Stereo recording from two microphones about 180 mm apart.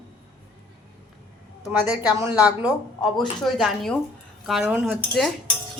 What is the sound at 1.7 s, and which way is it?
A woman's voice, 10° right (ahead or behind).